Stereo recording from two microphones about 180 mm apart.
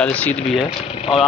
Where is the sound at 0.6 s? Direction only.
30° left (ahead or behind).